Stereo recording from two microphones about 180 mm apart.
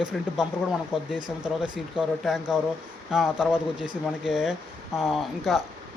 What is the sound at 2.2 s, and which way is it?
Speech, centre (ahead or behind).